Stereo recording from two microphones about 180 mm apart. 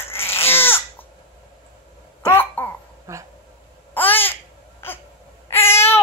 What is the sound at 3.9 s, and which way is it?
Babbling, 10° left (ahead or behind).